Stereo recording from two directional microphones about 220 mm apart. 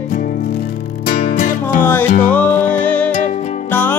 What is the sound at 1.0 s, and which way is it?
Music, 40° left (ahead or behind).